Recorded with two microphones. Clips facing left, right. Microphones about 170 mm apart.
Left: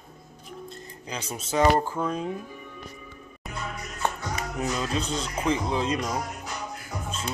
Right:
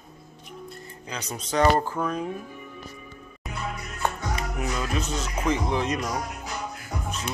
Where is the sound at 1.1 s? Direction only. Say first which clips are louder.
Even; 10° left (ahead or behind).